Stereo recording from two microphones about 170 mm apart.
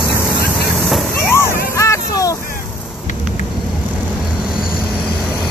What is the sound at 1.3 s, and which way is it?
Vehicle, 15° left (ahead or behind).